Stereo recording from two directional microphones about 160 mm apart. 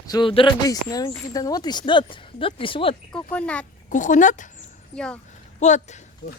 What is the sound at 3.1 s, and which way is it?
Speech, 5° left (ahead or behind).